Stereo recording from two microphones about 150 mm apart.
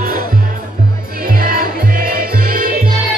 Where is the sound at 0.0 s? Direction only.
75° right (ahead or behind).